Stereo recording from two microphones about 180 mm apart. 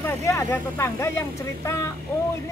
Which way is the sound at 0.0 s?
15° left (ahead or behind).